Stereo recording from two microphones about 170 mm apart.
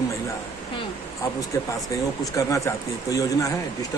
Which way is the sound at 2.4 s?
20° left (ahead or behind).